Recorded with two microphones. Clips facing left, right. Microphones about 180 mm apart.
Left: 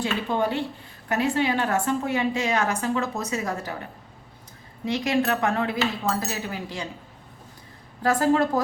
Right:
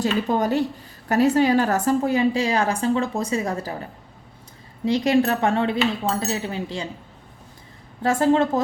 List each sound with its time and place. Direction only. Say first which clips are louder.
0.0 s a woman's voice: right 3 dB; 40° right (ahead or behind)
4.9 s speech: right 5 dB; 30° right (ahead or behind)
8.0 s speech: right 2 dB; 25° right (ahead or behind)